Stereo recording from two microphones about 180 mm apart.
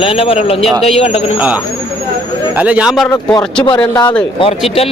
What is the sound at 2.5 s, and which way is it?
Speech, 5° right (ahead or behind).